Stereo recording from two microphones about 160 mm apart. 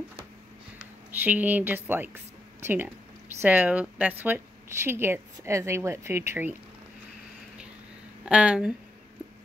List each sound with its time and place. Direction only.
1.1 s speech: 10° right (ahead or behind)
8.3 s speech: 5° right (ahead or behind)